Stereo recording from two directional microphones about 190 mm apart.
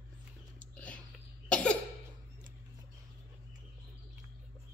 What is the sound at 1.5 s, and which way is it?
Cough, 5° left (ahead or behind).